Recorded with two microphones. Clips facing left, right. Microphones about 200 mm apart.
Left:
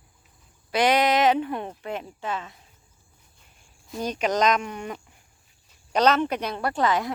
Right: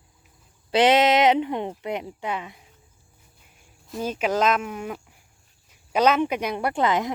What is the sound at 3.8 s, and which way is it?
A woman's voice, centre (ahead or behind).